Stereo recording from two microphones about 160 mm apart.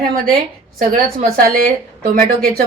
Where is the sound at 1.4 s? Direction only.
65° right (ahead or behind).